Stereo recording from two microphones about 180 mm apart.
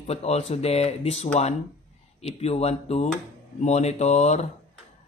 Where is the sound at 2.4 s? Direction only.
35° left (ahead or behind).